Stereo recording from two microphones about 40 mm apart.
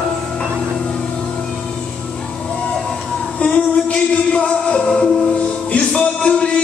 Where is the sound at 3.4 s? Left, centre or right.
Left.